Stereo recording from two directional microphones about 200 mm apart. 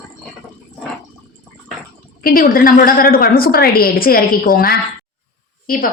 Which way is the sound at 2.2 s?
45° left (ahead or behind).